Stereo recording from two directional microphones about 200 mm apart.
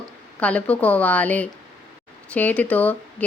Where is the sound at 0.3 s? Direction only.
5° left (ahead or behind).